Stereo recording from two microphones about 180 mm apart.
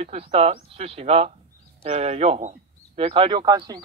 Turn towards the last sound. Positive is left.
turn(degrees=-20)  # may be behind; listen again after turning